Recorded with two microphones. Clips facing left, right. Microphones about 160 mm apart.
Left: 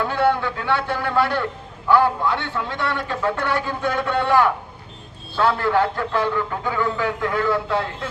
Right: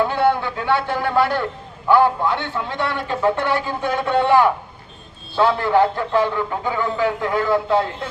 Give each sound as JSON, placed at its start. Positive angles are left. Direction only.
{"t": 0.0, "sound": "a man's voice", "side_deg": -30}